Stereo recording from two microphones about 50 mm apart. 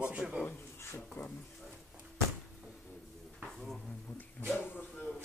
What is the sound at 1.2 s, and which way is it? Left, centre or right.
Speech, left.